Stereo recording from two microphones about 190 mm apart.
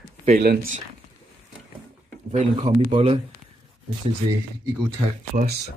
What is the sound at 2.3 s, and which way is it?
Speech, 35° right (ahead or behind).